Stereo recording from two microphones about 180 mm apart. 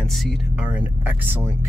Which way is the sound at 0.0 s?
Centre (ahead or behind).